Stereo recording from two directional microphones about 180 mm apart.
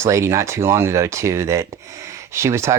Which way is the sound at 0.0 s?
15° right (ahead or behind).